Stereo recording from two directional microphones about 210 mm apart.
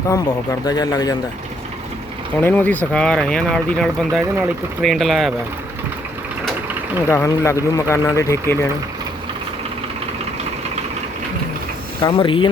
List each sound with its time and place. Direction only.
0.1 s speech: 20° left (ahead or behind)
2.4 s speech: 10° left (ahead or behind)
7.1 s speech: 15° left (ahead or behind)
12.1 s speech: 25° left (ahead or behind)